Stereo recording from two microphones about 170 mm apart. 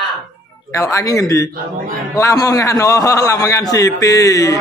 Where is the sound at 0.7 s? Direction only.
20° left (ahead or behind).